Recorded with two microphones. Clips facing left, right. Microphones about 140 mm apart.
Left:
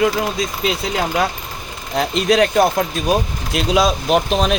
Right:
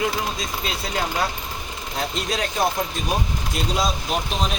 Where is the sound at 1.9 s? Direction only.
85° left.